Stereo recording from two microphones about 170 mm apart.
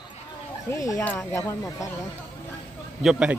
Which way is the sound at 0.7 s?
15° left (ahead or behind).